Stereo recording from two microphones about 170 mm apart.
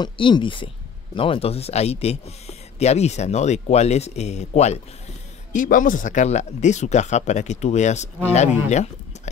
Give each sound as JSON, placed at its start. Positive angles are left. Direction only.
{"t": 0.0, "sound": "speech", "side_deg": 30}
{"t": 5.5, "sound": "speech", "side_deg": 50}